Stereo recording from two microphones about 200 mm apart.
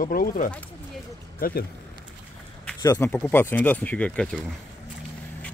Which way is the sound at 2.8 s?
15° left (ahead or behind).